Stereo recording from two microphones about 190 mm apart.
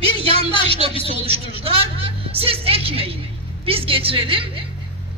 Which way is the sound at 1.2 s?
30° right (ahead or behind).